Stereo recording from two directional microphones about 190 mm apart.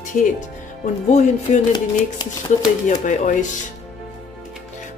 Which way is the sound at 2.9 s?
40° left (ahead or behind).